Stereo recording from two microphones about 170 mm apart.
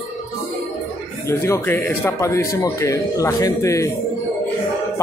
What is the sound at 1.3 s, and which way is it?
A man's voice, 15° left (ahead or behind).